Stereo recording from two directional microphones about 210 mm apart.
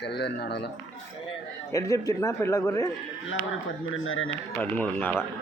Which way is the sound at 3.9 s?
70° left (ahead or behind).